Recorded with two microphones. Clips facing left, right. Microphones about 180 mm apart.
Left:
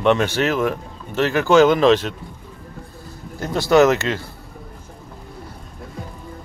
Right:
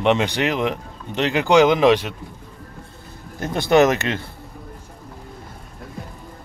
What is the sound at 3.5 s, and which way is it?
Speech, 20° right (ahead or behind).